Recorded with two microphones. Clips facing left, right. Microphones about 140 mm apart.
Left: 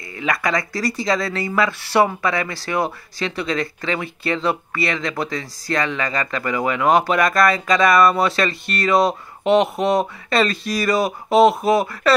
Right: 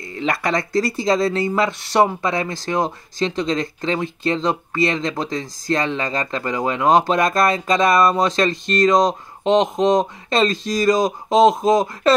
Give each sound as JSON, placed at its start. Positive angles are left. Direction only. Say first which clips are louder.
{"t": 0.2, "sound": "speech", "louder": "right 1 dB", "side_deg": -25}
{"t": 11.1, "sound": "speech", "louder": "even", "side_deg": 5}
{"t": 11.4, "sound": "speech", "louder": "right 4 dB", "side_deg": -20}